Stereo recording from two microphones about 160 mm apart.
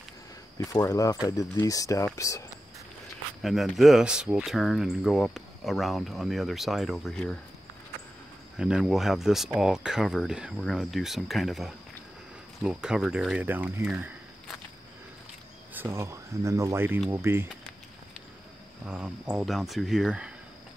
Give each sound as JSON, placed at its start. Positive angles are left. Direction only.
{"t": 0.6, "sound": "speech", "side_deg": 20}
{"t": 3.4, "sound": "speech", "side_deg": 0}
{"t": 8.5, "sound": "speech", "side_deg": -5}
{"t": 15.7, "sound": "speech", "side_deg": -15}
{"t": 18.9, "sound": "speech", "side_deg": -5}